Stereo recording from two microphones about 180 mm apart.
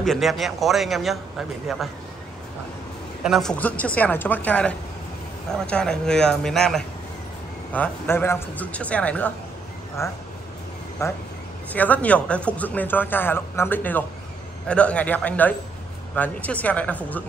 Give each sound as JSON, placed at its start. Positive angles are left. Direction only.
{"t": 0.0, "sound": "speech", "side_deg": 0}
{"t": 3.3, "sound": "speech", "side_deg": 0}